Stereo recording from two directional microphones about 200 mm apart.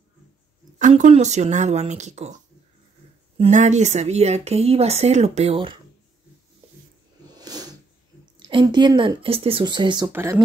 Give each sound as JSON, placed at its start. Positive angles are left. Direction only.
{"t": 0.7, "sound": "speech", "side_deg": -35}
{"t": 3.3, "sound": "speech", "side_deg": -35}
{"t": 7.3, "sound": "a sound", "side_deg": -20}
{"t": 8.5, "sound": "speech", "side_deg": -25}